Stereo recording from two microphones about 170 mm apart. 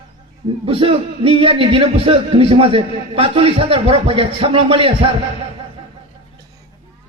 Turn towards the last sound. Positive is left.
turn(degrees=-30)  # may be behind; listen again after turning